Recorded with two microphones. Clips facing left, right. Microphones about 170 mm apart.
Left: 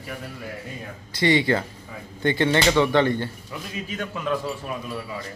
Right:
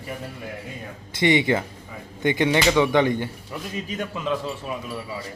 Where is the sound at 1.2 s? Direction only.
20° right (ahead or behind).